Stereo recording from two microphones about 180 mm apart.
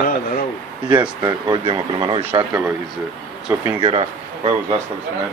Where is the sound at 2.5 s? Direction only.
10° right (ahead or behind).